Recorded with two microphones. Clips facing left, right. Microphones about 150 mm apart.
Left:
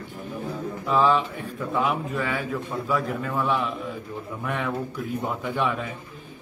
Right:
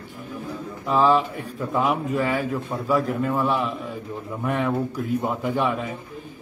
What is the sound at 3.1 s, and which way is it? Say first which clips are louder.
Speech: right 4 dB; 5° right (ahead or behind).